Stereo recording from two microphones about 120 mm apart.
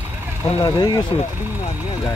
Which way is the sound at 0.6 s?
35° left (ahead or behind).